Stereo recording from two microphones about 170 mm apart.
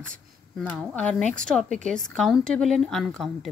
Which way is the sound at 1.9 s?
5° left (ahead or behind).